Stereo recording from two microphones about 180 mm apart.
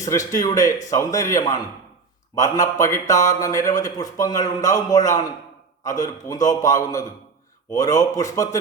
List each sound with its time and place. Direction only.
0.1 s speech: 20° left (ahead or behind)